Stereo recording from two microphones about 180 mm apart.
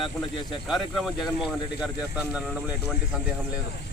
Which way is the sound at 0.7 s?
Centre (ahead or behind).